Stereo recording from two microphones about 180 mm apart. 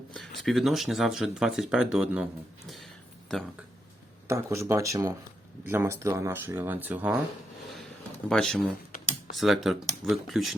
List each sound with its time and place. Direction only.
0.1 s speech: centre (ahead or behind)
2.6 s a sound: centre (ahead or behind)
4.3 s speech: 15° right (ahead or behind)
8.3 s speech: 5° left (ahead or behind)